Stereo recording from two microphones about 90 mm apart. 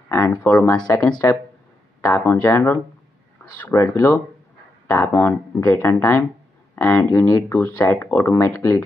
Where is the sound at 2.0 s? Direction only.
30° left (ahead or behind).